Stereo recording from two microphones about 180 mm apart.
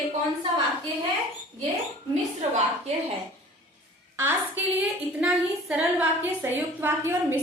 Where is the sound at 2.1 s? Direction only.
40° right (ahead or behind).